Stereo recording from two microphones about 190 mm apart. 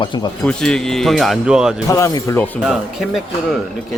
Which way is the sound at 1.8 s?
15° left (ahead or behind).